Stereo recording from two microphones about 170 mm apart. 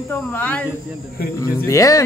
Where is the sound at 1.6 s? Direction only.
20° left (ahead or behind).